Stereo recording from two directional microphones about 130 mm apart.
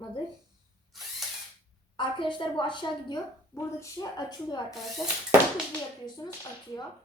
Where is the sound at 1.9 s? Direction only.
40° left (ahead or behind).